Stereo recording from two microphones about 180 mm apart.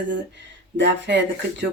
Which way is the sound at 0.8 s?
80° right.